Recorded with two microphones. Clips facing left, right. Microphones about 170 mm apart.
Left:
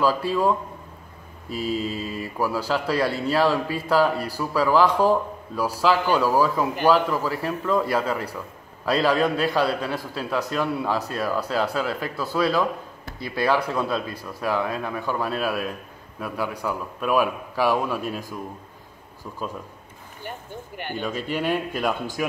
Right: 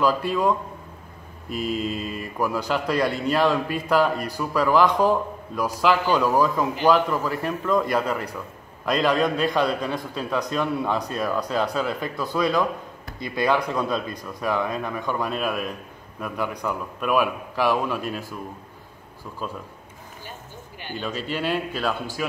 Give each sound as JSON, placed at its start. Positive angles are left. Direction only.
{"t": 0.0, "sound": "a man's voice", "side_deg": 5}
{"t": 1.8, "sound": "a man's voice", "side_deg": 5}
{"t": 20.2, "sound": "speech", "side_deg": 60}
{"t": 20.9, "sound": "a man's voice", "side_deg": 10}